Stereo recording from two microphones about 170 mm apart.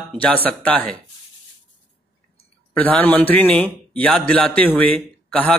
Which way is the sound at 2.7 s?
10° left (ahead or behind).